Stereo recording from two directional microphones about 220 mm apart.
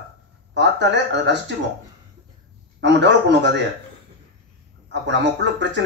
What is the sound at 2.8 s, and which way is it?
Speech, 55° right (ahead or behind).